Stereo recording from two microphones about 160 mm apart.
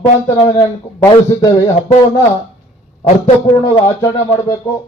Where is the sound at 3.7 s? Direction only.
25° left (ahead or behind).